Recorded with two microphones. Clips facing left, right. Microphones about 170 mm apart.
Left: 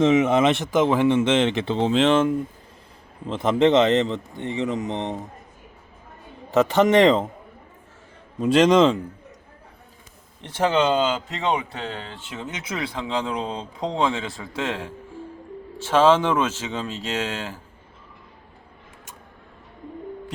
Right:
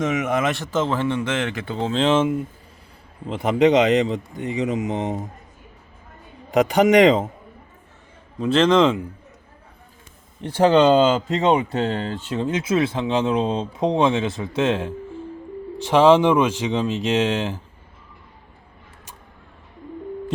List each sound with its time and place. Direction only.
0.0 s speech: 25° left (ahead or behind)
1.9 s speech: centre (ahead or behind); by 4.9 s 15° right (ahead or behind)
6.7 s speech: 15° right (ahead or behind)
8.4 s a man's voice: 5° left (ahead or behind)
10.4 s speech: 30° right (ahead or behind)
12.5 s speech: 25° right (ahead or behind)